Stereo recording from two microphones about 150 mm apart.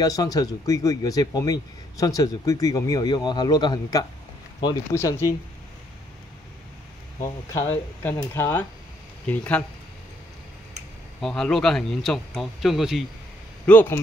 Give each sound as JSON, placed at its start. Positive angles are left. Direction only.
{"t": 0.0, "sound": "speech", "side_deg": 25}
{"t": 7.2, "sound": "speech", "side_deg": 20}
{"t": 11.1, "sound": "speech", "side_deg": 5}
{"t": 13.7, "sound": "speech", "side_deg": 15}